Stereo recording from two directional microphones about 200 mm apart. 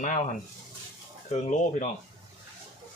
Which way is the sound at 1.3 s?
35° left (ahead or behind).